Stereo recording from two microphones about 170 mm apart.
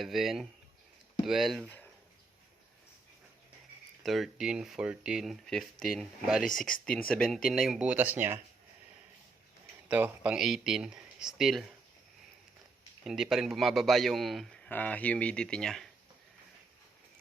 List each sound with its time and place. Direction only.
0.0 s a man's voice: centre (ahead or behind)
4.0 s a man's voice: centre (ahead or behind)
9.9 s a man's voice: 10° right (ahead or behind)
13.1 s a man's voice: centre (ahead or behind)